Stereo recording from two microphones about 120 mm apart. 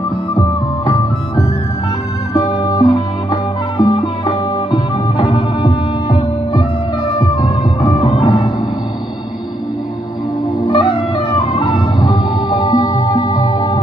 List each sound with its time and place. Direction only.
2.3 s music: 35° left (ahead or behind)
7.2 s music: 30° left (ahead or behind)
7.9 s music: 45° left (ahead or behind)
10.7 s music: 40° left (ahead or behind)